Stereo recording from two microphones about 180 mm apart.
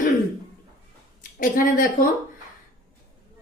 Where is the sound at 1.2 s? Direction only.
50° left (ahead or behind).